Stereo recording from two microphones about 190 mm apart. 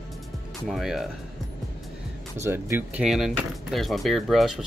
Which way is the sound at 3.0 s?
Centre (ahead or behind).